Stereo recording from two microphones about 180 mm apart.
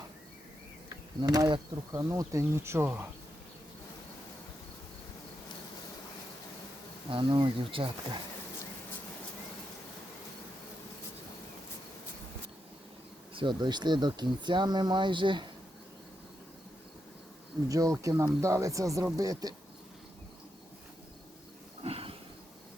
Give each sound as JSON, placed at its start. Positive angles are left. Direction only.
{"t": 0.9, "sound": "speech", "side_deg": -20}
{"t": 7.1, "sound": "speech", "side_deg": -30}
{"t": 13.3, "sound": "speech", "side_deg": -25}
{"t": 17.7, "sound": "speech", "side_deg": -20}
{"t": 21.8, "sound": "a sound", "side_deg": -35}